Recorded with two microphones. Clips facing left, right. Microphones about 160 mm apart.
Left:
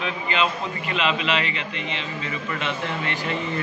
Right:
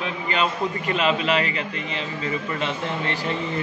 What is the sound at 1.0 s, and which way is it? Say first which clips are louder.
Speech: right 3 dB; 40° right (ahead or behind).